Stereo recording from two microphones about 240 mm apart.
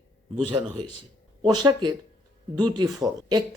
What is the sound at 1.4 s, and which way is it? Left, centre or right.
Speech, centre.